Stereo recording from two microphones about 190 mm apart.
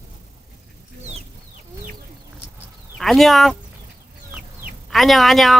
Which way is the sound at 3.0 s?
Centre (ahead or behind).